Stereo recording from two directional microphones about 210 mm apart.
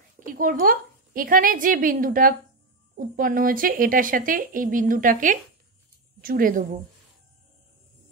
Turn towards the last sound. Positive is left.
turn(degrees=-40)  # may be behind; listen again after turning